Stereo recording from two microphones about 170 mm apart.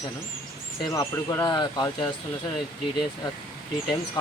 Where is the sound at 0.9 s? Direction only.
20° left (ahead or behind).